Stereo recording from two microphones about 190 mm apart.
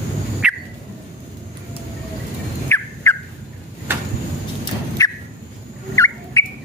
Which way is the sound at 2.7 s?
10° left (ahead or behind).